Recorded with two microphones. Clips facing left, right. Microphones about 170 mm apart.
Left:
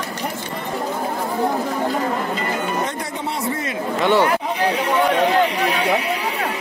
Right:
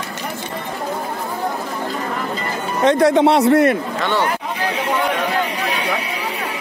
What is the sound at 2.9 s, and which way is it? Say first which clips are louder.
Speech: right 14 dB; 80° right.